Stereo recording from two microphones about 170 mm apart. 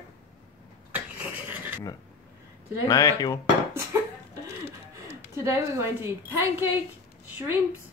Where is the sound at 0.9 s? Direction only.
10° right (ahead or behind).